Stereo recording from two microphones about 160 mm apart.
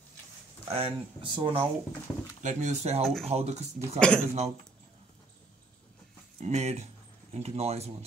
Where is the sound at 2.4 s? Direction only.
50° right (ahead or behind).